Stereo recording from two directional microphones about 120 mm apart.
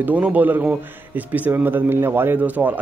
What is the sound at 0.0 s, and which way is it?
Speech, 10° right (ahead or behind).